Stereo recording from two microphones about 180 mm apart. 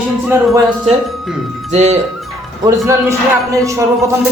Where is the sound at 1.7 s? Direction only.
35° right (ahead or behind).